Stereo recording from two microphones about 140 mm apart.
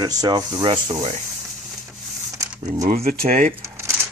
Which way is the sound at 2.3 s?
25° right (ahead or behind).